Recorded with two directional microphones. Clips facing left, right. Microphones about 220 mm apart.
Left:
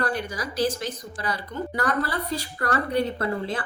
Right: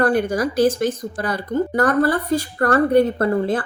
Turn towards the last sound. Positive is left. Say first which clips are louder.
# right 8 dB
turn(degrees=-50)  # may be behind; listen again after turning